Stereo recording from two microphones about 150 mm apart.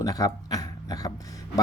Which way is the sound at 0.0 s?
25° left (ahead or behind).